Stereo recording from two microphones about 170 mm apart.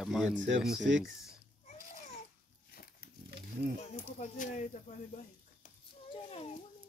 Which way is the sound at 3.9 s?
50° left (ahead or behind).